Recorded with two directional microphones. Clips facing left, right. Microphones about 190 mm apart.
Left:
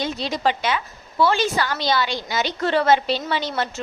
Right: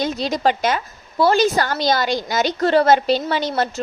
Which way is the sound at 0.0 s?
40° right (ahead or behind).